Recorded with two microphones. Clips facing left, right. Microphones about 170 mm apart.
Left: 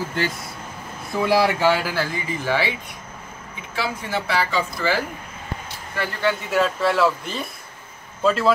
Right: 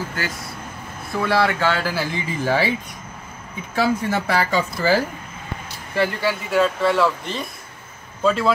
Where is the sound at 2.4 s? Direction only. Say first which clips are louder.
Right 3 dB; 40° right (ahead or behind).